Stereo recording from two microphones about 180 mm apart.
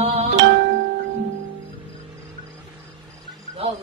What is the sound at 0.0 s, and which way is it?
Music, 35° right (ahead or behind).